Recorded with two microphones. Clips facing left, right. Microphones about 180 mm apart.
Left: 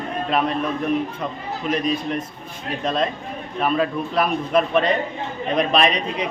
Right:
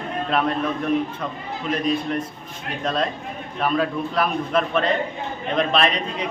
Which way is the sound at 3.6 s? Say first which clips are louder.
Left 1 dB; 5° left (ahead or behind).